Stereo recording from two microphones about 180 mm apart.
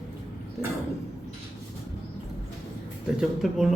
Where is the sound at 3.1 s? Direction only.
Centre (ahead or behind).